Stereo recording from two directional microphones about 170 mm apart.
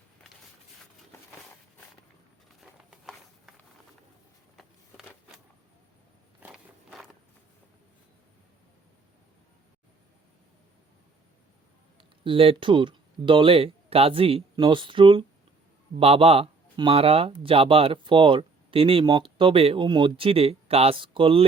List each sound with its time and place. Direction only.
2.9 s a sound: centre (ahead or behind)
6.4 s walk: centre (ahead or behind)
11.9 s speech: 30° right (ahead or behind)